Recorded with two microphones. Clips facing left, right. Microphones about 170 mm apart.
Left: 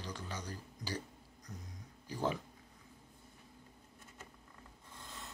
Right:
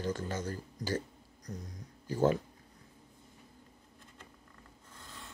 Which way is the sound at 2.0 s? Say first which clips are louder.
Right 8 dB; 50° right (ahead or behind).